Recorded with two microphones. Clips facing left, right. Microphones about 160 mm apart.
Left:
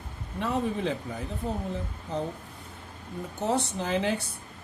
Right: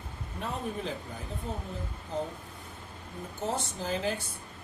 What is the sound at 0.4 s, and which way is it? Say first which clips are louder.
Speech: left 7 dB; 75° left (ahead or behind).